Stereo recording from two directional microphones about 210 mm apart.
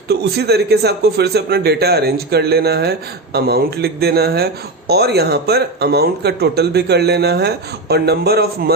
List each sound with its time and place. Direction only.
0.1 s speech: 50° right (ahead or behind)